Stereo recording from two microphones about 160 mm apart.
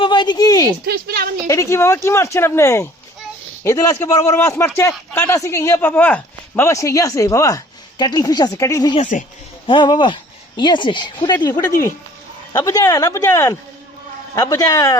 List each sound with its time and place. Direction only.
0.0 s a woman's voice: 30° left (ahead or behind)
0.9 s a woman's voice: 70° right (ahead or behind)
1.5 s a man's voice: 20° left (ahead or behind)
9.0 s speech: 55° left (ahead or behind)
9.6 s a man's voice: 30° left (ahead or behind)